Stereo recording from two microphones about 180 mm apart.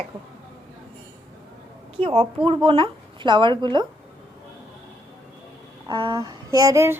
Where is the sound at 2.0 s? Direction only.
30° right (ahead or behind).